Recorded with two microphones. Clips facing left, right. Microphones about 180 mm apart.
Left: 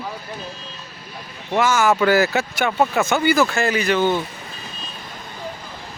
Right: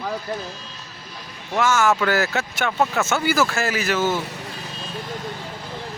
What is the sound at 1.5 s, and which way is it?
Speech, centre (ahead or behind).